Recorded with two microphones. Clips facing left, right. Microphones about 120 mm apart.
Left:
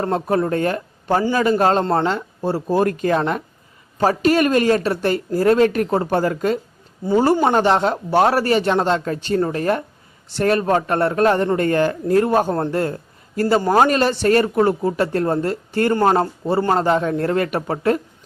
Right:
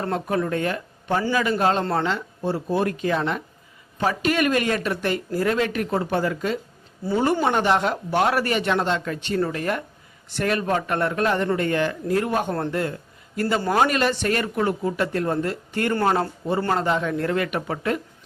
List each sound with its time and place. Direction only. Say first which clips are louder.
0.0 s a man's voice: left 5 dB; 35° left (ahead or behind)